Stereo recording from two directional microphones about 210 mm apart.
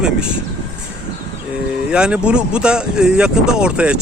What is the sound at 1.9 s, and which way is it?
Speech, 5° right (ahead or behind).